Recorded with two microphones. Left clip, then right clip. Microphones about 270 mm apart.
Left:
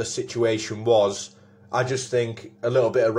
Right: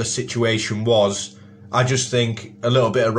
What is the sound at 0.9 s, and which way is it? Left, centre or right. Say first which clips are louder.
Speech: right 2 dB; centre.